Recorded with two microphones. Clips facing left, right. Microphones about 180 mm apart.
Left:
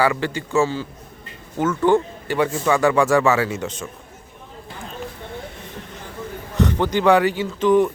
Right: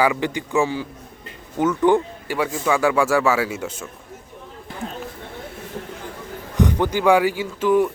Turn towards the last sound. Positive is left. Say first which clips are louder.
# left 2 dB
turn(degrees=-5)  # may be behind; listen again after turning